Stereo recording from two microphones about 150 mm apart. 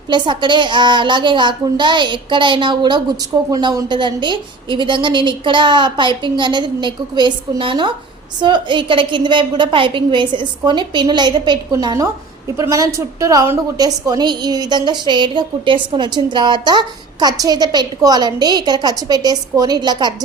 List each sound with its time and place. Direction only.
0.1 s a woman's voice: 30° right (ahead or behind)